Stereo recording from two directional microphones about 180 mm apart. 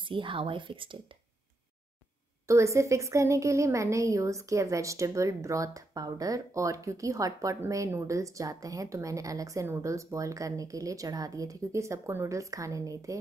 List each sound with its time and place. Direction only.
0.0 s speech: 30° right (ahead or behind)
2.4 s a woman's voice: 15° right (ahead or behind)